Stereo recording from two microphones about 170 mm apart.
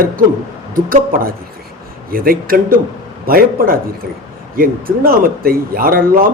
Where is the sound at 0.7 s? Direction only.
55° right (ahead or behind).